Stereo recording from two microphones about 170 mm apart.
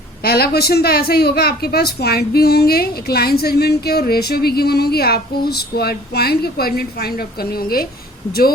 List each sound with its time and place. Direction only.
0.2 s a woman's voice: 65° left (ahead or behind)